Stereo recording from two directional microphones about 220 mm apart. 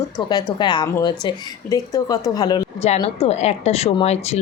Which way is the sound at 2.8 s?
30° left (ahead or behind).